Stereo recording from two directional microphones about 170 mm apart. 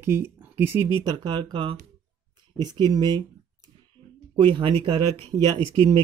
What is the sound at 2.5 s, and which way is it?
Speech, 25° right (ahead or behind).